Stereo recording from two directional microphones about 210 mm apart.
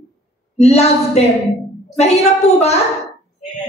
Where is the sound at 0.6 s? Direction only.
30° left (ahead or behind).